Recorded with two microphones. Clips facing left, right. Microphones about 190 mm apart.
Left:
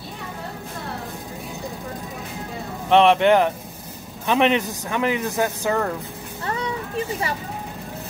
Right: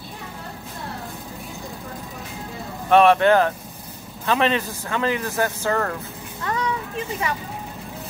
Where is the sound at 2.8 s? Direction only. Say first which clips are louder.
Even; 20° left (ahead or behind).